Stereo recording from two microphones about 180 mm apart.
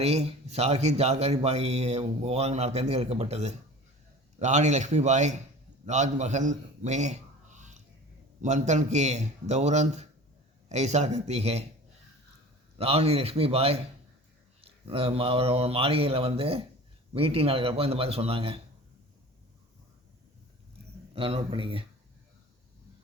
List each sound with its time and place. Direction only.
0.0 s a man's voice: 35° right (ahead or behind)
12.8 s speech: 35° right (ahead or behind)
21.2 s speech: 30° right (ahead or behind)